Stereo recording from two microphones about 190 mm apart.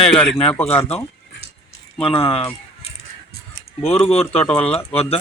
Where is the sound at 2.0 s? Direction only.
30° left (ahead or behind).